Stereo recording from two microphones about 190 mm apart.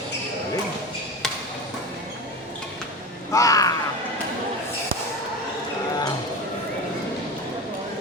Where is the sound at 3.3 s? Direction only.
15° left (ahead or behind).